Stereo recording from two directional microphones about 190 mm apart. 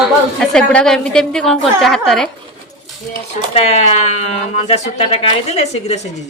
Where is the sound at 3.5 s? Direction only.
35° left (ahead or behind).